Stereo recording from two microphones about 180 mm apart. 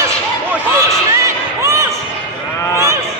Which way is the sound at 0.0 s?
15° right (ahead or behind).